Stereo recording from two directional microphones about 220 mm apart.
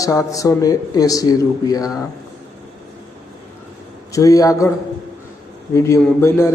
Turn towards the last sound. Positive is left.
turn(degrees=10)  # may be behind; listen again after turning